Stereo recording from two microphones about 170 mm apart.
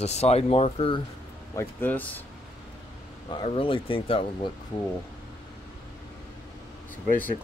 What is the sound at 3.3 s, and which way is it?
Speech, 30° left (ahead or behind).